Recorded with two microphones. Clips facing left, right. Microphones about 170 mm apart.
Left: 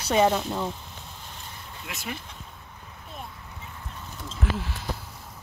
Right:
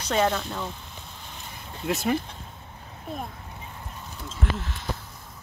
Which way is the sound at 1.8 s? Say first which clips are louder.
Right 12 dB; 40° right (ahead or behind).